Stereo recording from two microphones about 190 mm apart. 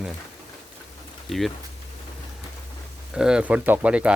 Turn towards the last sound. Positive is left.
turn(degrees=-5)  # may be behind; listen again after turning